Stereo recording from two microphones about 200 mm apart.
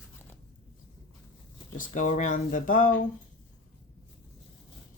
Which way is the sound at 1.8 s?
40° left (ahead or behind).